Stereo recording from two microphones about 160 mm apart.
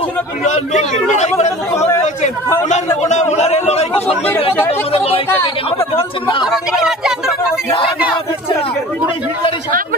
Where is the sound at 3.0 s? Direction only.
45° left (ahead or behind).